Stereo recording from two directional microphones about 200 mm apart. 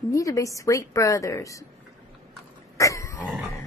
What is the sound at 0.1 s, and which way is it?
A woman's voice, 15° left (ahead or behind).